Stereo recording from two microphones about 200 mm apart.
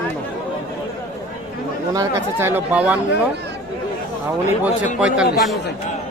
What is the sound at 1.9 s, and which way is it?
Speech, 15° right (ahead or behind).